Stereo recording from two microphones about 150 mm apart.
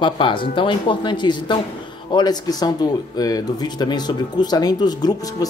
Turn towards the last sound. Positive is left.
turn(degrees=25)  # may be behind; listen again after turning